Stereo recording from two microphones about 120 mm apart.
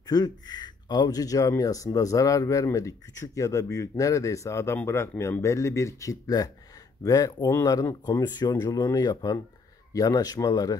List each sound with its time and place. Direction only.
0.0 s speech: 35° left (ahead or behind)